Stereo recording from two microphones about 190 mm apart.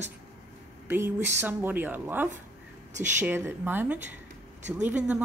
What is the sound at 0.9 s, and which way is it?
A woman's voice, 10° right (ahead or behind).